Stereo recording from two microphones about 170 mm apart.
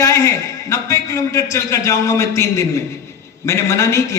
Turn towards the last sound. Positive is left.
turn(degrees=15)  # may be behind; listen again after turning